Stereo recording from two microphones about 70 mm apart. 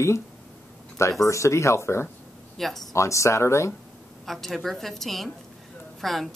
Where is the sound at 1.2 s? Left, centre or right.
Left.